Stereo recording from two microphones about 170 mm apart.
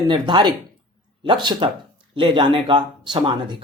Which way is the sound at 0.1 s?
25° right (ahead or behind).